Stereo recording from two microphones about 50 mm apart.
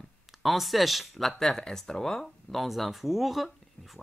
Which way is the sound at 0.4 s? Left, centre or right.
Centre.